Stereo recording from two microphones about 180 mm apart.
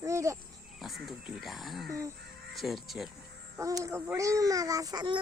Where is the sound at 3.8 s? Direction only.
15° right (ahead or behind).